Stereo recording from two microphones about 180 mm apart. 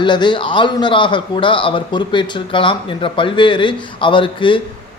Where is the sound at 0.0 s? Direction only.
25° left (ahead or behind).